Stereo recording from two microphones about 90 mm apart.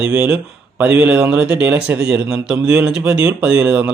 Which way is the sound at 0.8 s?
15° right (ahead or behind).